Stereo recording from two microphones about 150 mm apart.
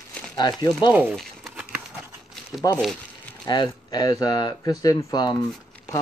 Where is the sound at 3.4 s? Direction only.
30° left (ahead or behind).